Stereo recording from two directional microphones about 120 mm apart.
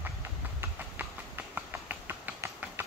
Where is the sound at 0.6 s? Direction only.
15° right (ahead or behind).